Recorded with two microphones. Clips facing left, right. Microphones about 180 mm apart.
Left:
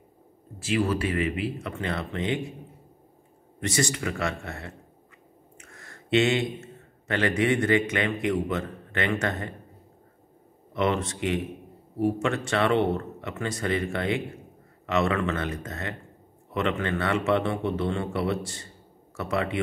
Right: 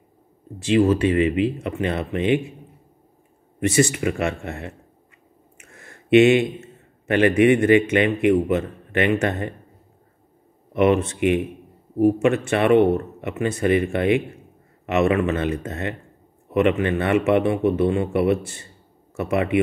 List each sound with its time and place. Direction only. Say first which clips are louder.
0.7 s speech: right 8 dB; 20° right (ahead or behind)
3.9 s speech: right 6 dB; 20° right (ahead or behind)
6.0 s a man's voice: right 9 dB; 20° right (ahead or behind)
10.7 s a man's voice: right 8 dB; 15° right (ahead or behind)